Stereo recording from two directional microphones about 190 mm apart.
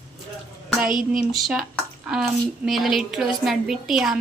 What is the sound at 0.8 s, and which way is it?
Speech, 45° right (ahead or behind).